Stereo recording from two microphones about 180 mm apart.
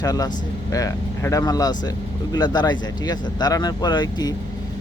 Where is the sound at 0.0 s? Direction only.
20° left (ahead or behind).